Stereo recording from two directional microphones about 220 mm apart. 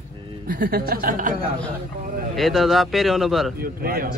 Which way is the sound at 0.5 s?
45° right (ahead or behind).